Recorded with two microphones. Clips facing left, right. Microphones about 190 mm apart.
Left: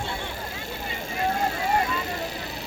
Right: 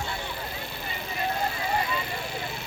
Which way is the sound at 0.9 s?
45° left (ahead or behind).